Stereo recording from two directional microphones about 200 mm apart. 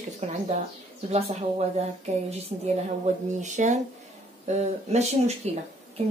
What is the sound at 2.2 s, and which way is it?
A woman's voice, 30° right (ahead or behind).